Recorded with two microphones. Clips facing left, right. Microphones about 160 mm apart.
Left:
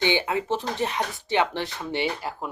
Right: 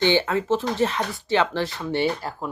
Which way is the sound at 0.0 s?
15° left (ahead or behind).